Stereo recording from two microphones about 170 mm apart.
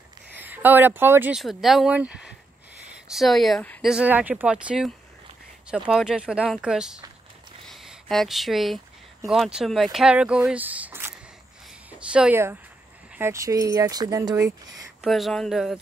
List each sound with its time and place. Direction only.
0.4 s speech: 10° right (ahead or behind)
1.4 s speech: centre (ahead or behind)
3.9 s speech: 10° right (ahead or behind)
15.0 s speech: centre (ahead or behind)